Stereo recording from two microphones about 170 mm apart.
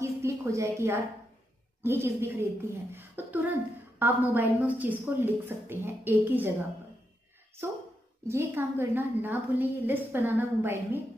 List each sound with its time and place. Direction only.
0.0 s a sound: 15° right (ahead or behind)
1.8 s a woman's voice: 15° right (ahead or behind)
8.3 s a woman's voice: 15° right (ahead or behind)